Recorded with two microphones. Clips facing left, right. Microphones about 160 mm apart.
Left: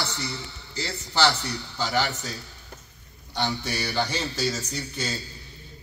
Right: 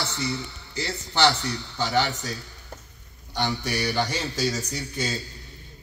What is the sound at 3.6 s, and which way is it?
Speech, 15° right (ahead or behind).